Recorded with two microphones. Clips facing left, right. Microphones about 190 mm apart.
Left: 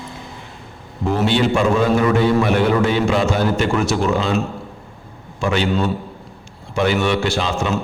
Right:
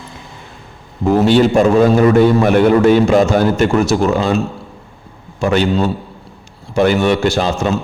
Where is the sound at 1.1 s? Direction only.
40° right (ahead or behind).